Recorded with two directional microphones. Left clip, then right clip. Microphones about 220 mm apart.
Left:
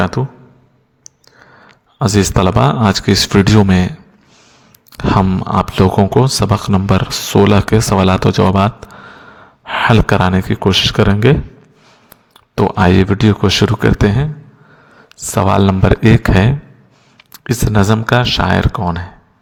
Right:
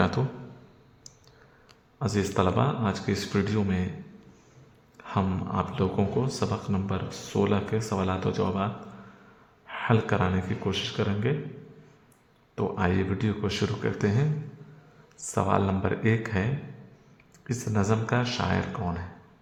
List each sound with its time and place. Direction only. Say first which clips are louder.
0.0 s speech: left 10 dB; 30° left (ahead or behind)
2.0 s speech: left 13 dB; 40° left (ahead or behind)
4.9 s speech: left 16 dB; 45° left (ahead or behind)
12.5 s speech: left 16 dB; 45° left (ahead or behind)